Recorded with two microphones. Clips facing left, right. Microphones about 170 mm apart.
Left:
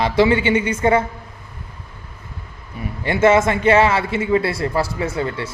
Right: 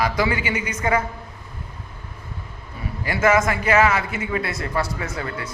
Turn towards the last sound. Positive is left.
turn(degrees=30)  # may be behind; listen again after turning